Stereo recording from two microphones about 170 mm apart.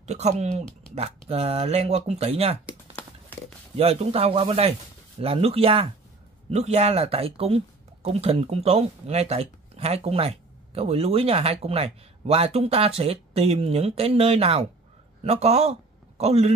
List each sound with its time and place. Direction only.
0.0 s speech: 40° right (ahead or behind)
3.0 s a sound: 10° left (ahead or behind)
3.7 s a man's voice: 35° right (ahead or behind)